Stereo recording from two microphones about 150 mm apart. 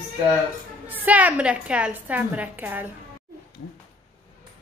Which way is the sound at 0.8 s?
10° right (ahead or behind).